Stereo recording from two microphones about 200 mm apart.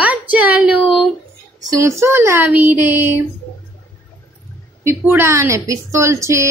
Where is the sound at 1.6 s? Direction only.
15° right (ahead or behind).